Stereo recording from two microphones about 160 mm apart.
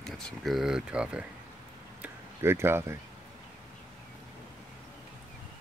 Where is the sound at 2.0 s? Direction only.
15° right (ahead or behind).